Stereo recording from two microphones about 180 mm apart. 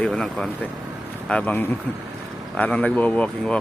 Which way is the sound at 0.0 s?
5° left (ahead or behind).